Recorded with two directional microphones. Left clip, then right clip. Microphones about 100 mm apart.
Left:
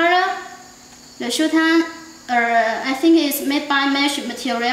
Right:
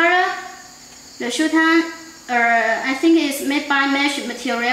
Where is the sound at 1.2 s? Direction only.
20° left (ahead or behind).